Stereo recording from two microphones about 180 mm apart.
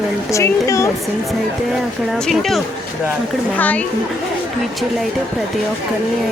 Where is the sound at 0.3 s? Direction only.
15° left (ahead or behind).